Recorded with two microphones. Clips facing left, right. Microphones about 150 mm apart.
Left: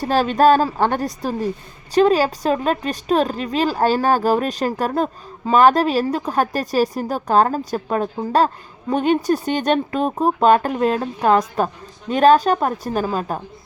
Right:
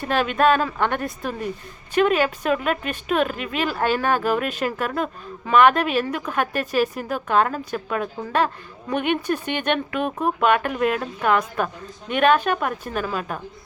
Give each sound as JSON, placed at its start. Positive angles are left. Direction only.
{"t": 0.0, "sound": "speech", "side_deg": 35}